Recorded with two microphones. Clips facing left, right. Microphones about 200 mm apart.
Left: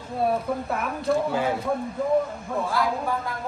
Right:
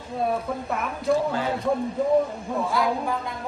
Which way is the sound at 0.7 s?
5° left (ahead or behind).